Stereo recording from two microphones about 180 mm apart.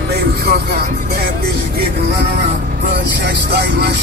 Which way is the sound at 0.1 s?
60° right (ahead or behind).